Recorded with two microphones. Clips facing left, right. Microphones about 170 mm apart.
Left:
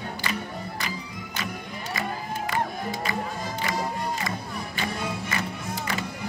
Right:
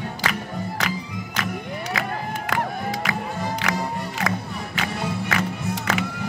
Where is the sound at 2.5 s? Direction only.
85° right.